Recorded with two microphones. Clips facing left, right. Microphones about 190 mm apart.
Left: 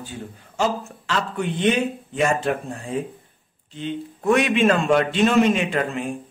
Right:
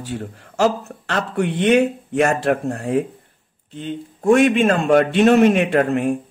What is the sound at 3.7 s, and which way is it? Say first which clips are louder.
Speech: even; 45° right (ahead or behind).